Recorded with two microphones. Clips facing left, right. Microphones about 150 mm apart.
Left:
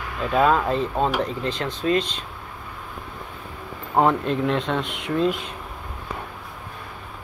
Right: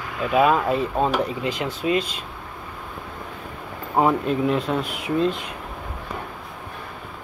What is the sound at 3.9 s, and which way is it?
Speech, 5° right (ahead or behind).